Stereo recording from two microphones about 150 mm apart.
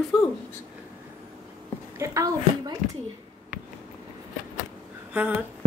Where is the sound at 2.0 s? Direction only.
20° right (ahead or behind).